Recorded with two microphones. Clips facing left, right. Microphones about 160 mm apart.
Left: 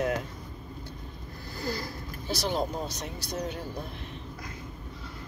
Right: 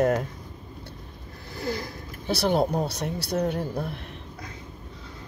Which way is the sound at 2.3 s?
60° right (ahead or behind).